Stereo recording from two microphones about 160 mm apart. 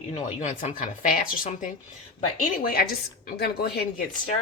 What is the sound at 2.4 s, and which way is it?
A woman's voice, 65° left (ahead or behind).